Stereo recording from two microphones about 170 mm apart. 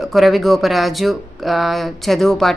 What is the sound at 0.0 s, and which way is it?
Speech, centre (ahead or behind).